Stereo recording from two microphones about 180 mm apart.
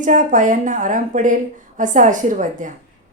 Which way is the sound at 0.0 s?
45° right (ahead or behind).